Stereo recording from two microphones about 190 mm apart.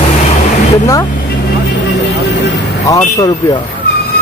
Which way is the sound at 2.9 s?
15° left (ahead or behind).